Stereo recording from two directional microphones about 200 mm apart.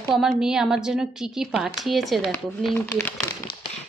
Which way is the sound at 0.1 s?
Centre (ahead or behind).